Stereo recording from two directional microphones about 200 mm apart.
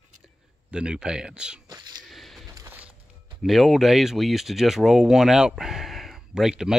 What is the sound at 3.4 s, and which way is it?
Speech, centre (ahead or behind).